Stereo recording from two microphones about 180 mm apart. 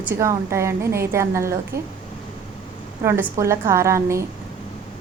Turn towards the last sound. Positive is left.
turn(degrees=-15)  # may be behind; listen again after turning